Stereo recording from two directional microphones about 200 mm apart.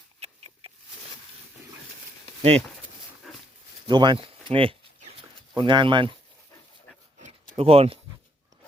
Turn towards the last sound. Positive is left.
turn(degrees=-30)  # may be behind; listen again after turning